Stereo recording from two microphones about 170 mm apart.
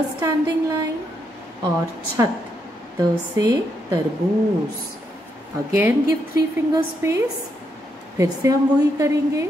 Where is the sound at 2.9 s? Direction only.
20° right (ahead or behind).